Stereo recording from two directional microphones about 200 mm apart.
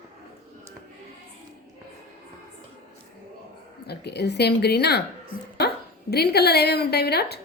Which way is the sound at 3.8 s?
55° left (ahead or behind).